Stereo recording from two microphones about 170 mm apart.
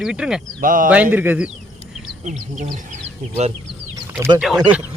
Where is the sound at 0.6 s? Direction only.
55° right (ahead or behind).